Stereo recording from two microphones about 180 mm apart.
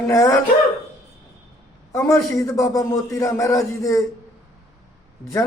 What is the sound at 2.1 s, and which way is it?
A man's voice, 15° left (ahead or behind).